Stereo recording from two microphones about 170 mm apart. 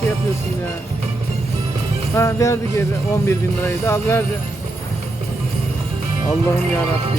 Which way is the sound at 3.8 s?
15° left (ahead or behind).